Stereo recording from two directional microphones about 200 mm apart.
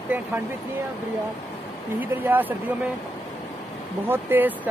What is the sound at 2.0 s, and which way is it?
Speech, 10° right (ahead or behind).